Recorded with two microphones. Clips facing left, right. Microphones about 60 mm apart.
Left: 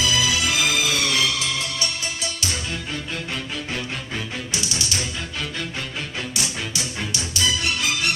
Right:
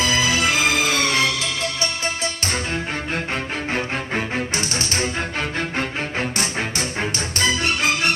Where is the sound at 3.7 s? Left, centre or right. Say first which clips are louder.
Right 7 dB; right.